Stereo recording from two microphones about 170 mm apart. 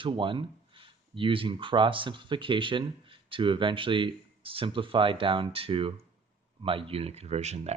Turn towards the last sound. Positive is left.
turn(degrees=-40)  # may be behind; listen again after turning